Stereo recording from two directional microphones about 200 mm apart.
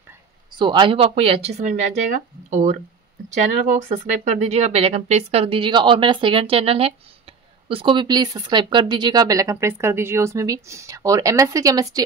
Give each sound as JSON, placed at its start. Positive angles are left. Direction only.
{"t": 0.6, "sound": "speech", "side_deg": -25}